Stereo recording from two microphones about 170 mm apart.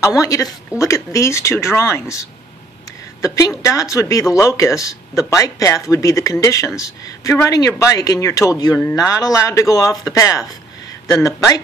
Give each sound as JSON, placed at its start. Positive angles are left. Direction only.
{"t": 0.2, "sound": "speech", "side_deg": 20}
{"t": 3.2, "sound": "speech", "side_deg": 20}